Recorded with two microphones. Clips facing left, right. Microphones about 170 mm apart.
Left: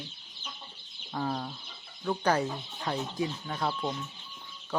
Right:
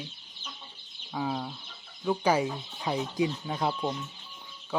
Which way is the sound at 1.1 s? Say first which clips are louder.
Right 1 dB; 5° right (ahead or behind).